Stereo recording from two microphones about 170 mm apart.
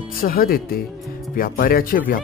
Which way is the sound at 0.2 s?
60° left (ahead or behind).